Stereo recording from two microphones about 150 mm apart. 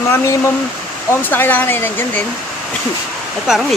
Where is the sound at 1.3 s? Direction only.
10° left (ahead or behind).